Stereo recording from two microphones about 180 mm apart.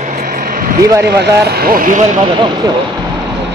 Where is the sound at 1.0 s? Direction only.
65° right (ahead or behind).